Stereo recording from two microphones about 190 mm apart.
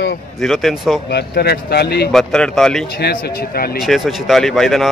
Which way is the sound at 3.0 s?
50° left (ahead or behind).